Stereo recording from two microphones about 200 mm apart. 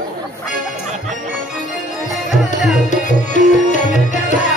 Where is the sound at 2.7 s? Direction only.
40° left (ahead or behind).